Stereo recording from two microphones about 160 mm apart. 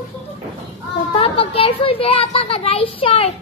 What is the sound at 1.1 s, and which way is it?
A child's voice, 35° left (ahead or behind).